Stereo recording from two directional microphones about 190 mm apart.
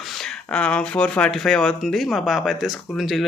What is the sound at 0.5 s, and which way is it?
Speech, 5° left (ahead or behind).